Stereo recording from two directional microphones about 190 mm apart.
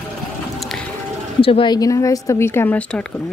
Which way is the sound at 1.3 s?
30° left (ahead or behind).